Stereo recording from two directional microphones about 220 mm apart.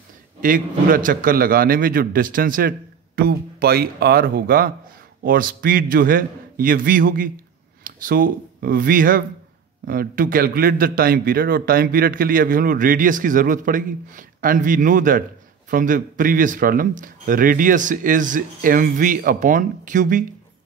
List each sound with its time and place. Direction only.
0.4 s a man's voice: 40° right (ahead or behind)